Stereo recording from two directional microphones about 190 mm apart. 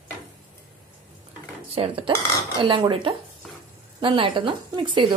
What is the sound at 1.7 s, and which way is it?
A woman's voice, 30° right (ahead or behind).